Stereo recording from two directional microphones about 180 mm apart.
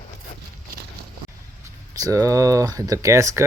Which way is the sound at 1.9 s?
20° right (ahead or behind).